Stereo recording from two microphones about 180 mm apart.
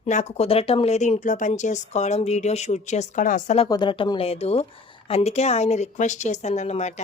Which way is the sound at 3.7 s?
25° left (ahead or behind).